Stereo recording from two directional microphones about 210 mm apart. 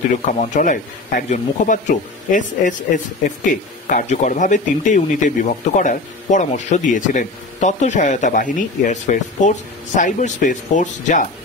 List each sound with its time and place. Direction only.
0.3 s speech: 40° left (ahead or behind)